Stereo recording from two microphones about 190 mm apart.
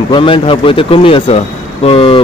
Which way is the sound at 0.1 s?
25° left (ahead or behind).